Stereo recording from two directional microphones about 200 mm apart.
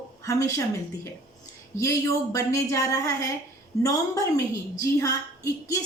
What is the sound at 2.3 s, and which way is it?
A woman's voice, 15° left (ahead or behind).